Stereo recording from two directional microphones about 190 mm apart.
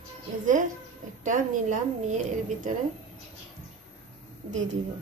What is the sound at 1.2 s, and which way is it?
A woman's voice, 40° right (ahead or behind).